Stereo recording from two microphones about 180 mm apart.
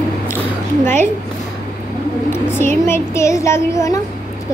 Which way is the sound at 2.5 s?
15° left (ahead or behind).